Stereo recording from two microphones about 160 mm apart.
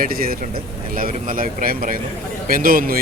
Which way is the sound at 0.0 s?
65° right (ahead or behind).